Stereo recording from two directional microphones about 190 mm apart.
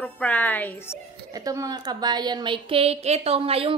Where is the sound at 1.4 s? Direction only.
20° right (ahead or behind).